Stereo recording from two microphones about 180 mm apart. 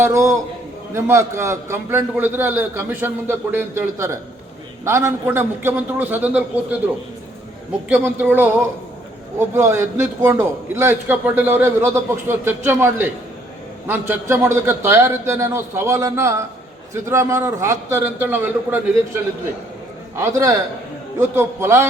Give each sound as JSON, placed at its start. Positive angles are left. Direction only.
{"t": 0.0, "sound": "a man's voice", "side_deg": -15}
{"t": 7.9, "sound": "a man's voice", "side_deg": -10}